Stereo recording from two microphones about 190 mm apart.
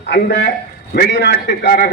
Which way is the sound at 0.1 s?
60° left (ahead or behind).